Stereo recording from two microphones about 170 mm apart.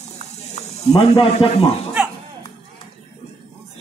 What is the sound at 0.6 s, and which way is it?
Speech, 40° left (ahead or behind).